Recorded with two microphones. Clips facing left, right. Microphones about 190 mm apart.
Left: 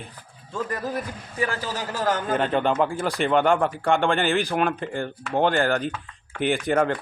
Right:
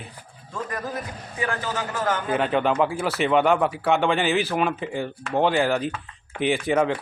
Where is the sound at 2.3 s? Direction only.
Centre (ahead or behind).